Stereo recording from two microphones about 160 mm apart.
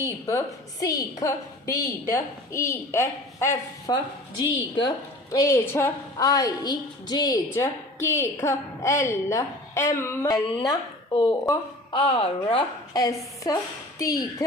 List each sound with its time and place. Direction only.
0.0 s a woman's voice: 20° left (ahead or behind)
5.3 s a woman's voice: 20° left (ahead or behind); by 12.6 s 35° left (ahead or behind)
12.9 s a woman's voice: 20° left (ahead or behind)